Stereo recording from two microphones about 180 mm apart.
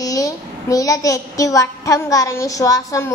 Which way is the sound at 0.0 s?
20° left (ahead or behind).